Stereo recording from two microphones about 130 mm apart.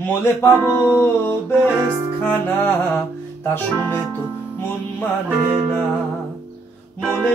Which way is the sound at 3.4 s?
15° left (ahead or behind).